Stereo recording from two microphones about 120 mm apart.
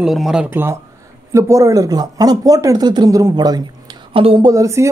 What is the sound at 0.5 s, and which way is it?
A woman's voice, 20° right (ahead or behind).